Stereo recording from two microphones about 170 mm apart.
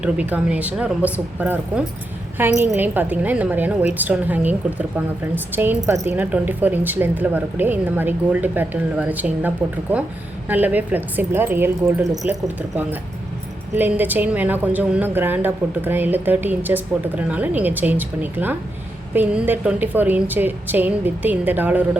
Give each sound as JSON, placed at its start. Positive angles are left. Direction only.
{"t": 0.0, "sound": "speech", "side_deg": -5}
{"t": 10.5, "sound": "speech", "side_deg": -10}